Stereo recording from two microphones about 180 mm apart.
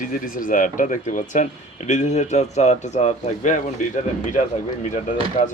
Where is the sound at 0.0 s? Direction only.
50° left (ahead or behind).